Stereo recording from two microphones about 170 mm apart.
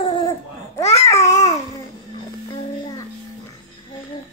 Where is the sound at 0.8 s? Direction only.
35° left (ahead or behind).